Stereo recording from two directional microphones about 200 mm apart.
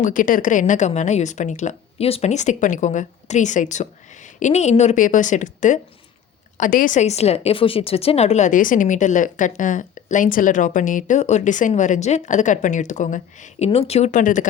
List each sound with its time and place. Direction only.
0.0 s a woman's voice: 40° left (ahead or behind)